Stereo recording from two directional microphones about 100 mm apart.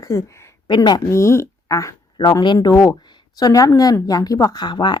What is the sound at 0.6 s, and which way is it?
Speech, 45° left (ahead or behind).